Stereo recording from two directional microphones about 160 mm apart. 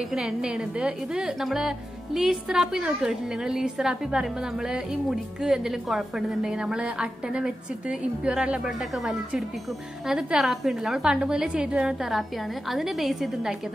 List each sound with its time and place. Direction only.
0.1 s a woman's voice: 5° right (ahead or behind)